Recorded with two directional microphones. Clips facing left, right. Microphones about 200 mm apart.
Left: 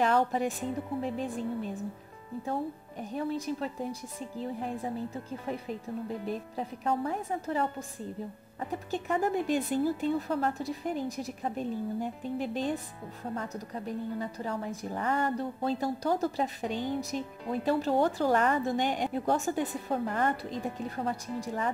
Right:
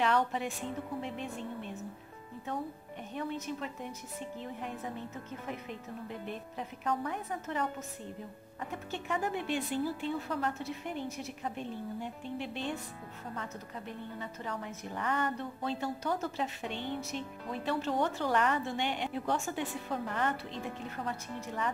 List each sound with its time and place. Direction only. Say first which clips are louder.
0.0 s speech: left 4 dB; 40° left (ahead or behind)